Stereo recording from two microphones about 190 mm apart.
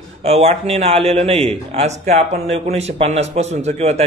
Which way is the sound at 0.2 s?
30° right (ahead or behind).